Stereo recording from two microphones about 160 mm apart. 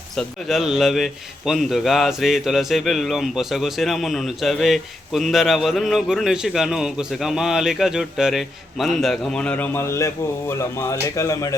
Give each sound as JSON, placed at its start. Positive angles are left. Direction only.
{"t": 0.2, "sound": "a man's voice", "side_deg": 0}